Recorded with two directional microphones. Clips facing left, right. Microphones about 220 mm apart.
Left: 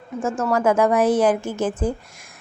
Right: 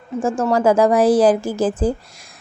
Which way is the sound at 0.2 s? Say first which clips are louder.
Right 4 dB; 30° right (ahead or behind).